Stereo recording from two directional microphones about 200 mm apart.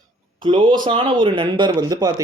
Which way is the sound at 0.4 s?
25° right (ahead or behind).